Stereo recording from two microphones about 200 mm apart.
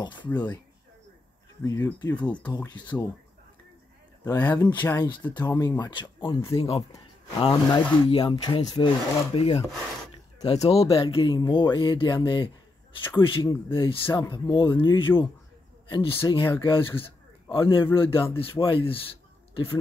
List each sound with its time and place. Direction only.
1.6 s speech: 15° left (ahead or behind)
4.2 s speech: 10° left (ahead or behind); by 13.9 s 25° left (ahead or behind)
14.0 s speech: 10° left (ahead or behind)
14.3 s speech: 25° left (ahead or behind)